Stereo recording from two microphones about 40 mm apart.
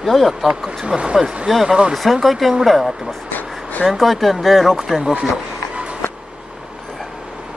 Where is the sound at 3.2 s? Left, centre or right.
Left.